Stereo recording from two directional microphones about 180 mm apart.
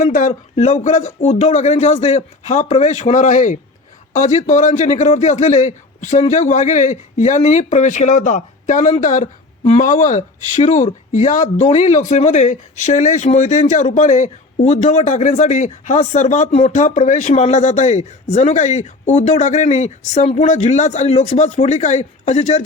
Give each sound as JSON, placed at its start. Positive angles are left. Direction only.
{"t": 0.0, "sound": "speech", "side_deg": 45}